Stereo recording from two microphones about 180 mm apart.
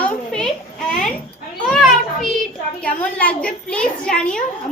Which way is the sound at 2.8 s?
5° left (ahead or behind).